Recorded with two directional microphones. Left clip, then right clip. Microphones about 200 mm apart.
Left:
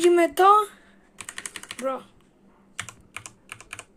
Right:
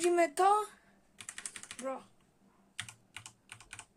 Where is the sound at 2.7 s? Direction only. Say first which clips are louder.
Left 9 dB; 35° left (ahead or behind).